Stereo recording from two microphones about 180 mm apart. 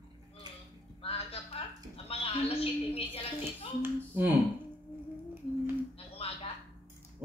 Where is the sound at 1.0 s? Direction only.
30° left (ahead or behind).